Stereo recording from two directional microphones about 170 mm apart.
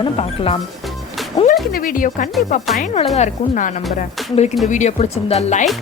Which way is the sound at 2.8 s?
40° left (ahead or behind).